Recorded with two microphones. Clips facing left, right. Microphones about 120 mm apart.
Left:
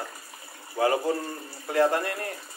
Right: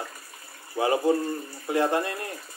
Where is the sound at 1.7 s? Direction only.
20° right (ahead or behind).